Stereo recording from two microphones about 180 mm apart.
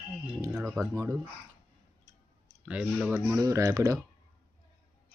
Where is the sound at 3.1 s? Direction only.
15° right (ahead or behind).